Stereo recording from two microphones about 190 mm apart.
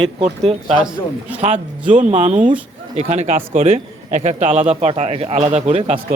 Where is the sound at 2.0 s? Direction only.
40° right (ahead or behind).